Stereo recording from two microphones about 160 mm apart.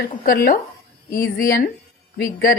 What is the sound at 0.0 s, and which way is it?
A woman's voice, 65° left (ahead or behind).